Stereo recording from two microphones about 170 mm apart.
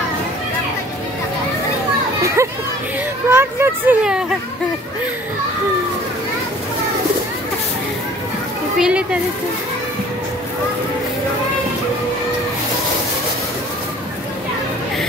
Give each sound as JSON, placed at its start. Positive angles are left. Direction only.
{"t": 2.4, "sound": "speech", "side_deg": -15}
{"t": 8.7, "sound": "speech", "side_deg": -5}